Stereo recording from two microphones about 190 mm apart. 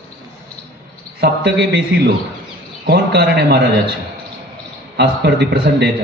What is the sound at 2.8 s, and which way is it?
Speech, 60° right (ahead or behind).